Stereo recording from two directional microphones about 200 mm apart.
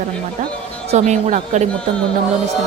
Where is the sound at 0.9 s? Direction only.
35° right (ahead or behind).